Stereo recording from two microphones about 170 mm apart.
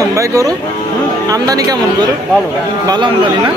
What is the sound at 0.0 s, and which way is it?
Music, 20° right (ahead or behind).